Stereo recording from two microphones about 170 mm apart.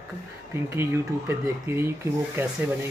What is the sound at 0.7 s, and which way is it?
Speech, 15° right (ahead or behind).